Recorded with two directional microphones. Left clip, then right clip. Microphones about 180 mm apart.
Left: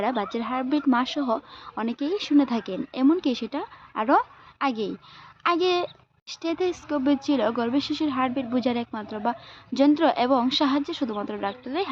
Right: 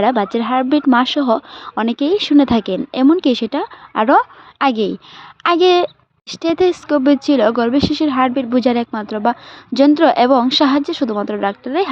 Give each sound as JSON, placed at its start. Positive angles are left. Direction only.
{"t": 0.0, "sound": "speech", "side_deg": -45}